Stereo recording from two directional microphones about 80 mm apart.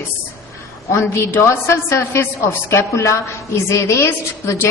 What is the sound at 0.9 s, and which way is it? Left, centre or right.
A woman's voice, left.